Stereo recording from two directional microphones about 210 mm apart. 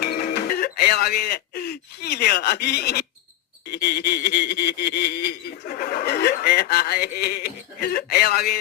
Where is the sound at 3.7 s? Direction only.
50° left (ahead or behind).